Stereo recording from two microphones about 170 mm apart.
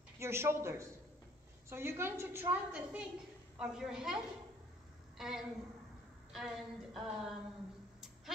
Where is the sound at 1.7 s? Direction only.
15° right (ahead or behind).